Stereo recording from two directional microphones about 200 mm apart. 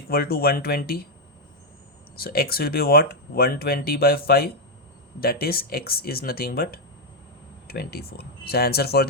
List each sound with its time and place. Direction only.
0.1 s speech: 50° left (ahead or behind)
2.1 s speech: 50° left (ahead or behind)